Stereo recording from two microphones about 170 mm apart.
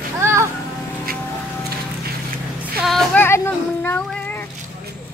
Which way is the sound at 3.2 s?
15° left (ahead or behind).